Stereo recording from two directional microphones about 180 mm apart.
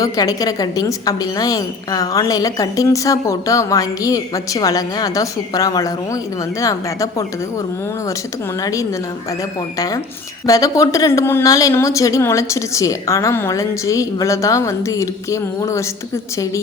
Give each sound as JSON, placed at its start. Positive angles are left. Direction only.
{"t": 0.0, "sound": "a woman's voice", "side_deg": 20}
{"t": 8.6, "sound": "a woman's voice", "side_deg": 20}